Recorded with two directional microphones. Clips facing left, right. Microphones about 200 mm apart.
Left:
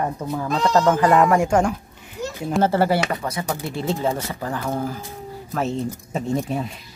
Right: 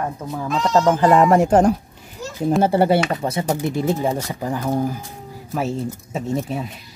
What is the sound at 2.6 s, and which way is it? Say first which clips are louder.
Speech: right 1 dB; 20° right (ahead or behind).